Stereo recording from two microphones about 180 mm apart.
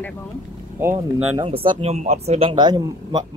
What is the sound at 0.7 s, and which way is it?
Speech, 15° right (ahead or behind).